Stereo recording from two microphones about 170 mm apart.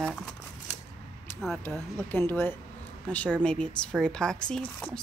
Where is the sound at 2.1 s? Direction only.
10° left (ahead or behind).